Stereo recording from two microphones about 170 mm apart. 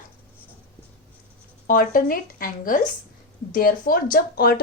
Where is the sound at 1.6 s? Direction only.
55° left (ahead or behind).